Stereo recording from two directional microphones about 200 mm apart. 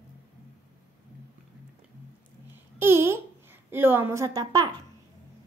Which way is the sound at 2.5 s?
10° right (ahead or behind).